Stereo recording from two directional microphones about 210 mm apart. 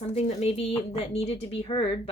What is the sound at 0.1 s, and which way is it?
Speech, 30° left (ahead or behind).